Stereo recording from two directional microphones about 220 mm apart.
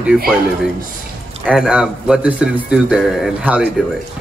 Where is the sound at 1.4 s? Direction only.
5° right (ahead or behind).